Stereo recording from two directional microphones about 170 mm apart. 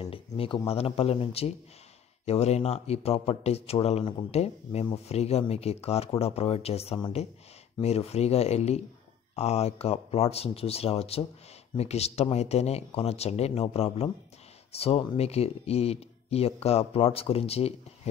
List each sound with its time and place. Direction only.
0.0 s speech: 35° left (ahead or behind)